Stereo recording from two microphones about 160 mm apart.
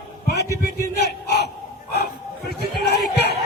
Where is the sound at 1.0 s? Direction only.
90° left.